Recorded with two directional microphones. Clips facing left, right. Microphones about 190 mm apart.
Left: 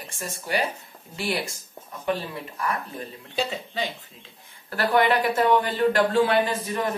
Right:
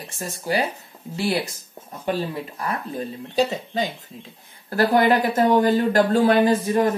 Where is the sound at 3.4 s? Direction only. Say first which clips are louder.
Right 6 dB; 40° right (ahead or behind).